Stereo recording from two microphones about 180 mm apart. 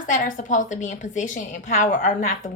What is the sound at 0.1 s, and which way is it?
Speech, 45° left (ahead or behind).